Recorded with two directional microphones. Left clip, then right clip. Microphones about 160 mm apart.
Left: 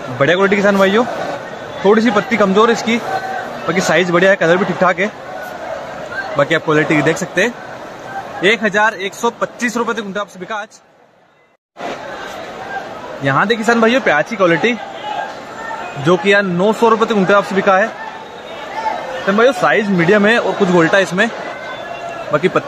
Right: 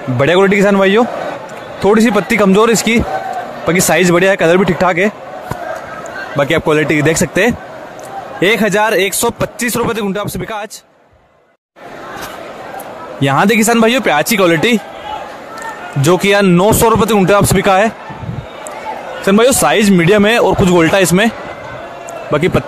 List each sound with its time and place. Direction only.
0.2 s a man's voice: 80° right
6.3 s speech: 50° right (ahead or behind)
6.7 s a man's voice: 80° right
13.2 s a man's voice: 75° right (ahead or behind); by 14.8 s 90° right
16.1 s speech: 85° right
19.2 s speech: 90° right; by 21.3 s 65° right (ahead or behind)
22.3 s a man's voice: 65° right (ahead or behind)